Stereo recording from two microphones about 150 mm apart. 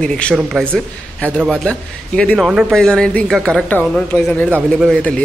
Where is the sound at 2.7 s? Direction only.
5° left (ahead or behind).